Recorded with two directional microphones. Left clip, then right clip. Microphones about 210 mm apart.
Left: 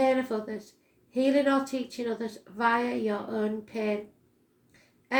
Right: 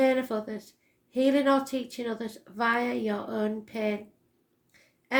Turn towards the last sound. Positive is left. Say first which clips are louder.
# right 1 dB
turn(degrees=-40)  # may be behind; listen again after turning